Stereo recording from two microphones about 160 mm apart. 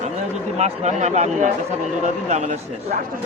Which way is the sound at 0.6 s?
45° right (ahead or behind).